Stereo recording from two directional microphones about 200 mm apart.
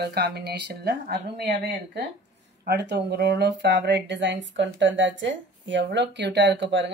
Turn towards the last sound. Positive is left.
turn(degrees=-65)  # may be behind; listen again after turning